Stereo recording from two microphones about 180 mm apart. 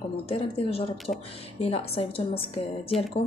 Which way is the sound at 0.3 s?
35° left (ahead or behind).